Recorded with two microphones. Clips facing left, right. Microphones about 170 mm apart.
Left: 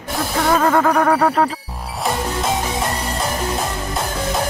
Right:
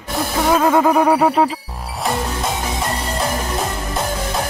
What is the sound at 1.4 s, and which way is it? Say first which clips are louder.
Music: right 1 dB; centre (ahead or behind).